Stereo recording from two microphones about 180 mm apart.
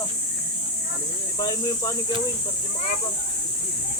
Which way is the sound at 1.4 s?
20° left (ahead or behind).